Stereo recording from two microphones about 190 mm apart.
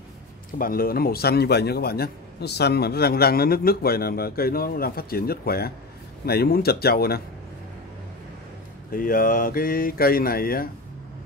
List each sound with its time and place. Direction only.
0.6 s a man's voice: 50° left (ahead or behind)
8.9 s a man's voice: 50° left (ahead or behind)